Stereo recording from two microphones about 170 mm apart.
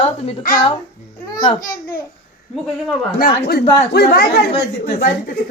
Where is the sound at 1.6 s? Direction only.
55° left (ahead or behind).